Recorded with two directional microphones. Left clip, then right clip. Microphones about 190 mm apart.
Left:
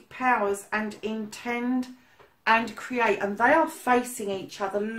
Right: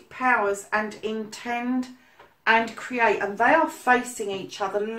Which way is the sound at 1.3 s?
35° left (ahead or behind).